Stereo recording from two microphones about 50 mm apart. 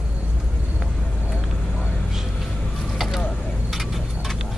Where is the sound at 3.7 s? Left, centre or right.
Centre.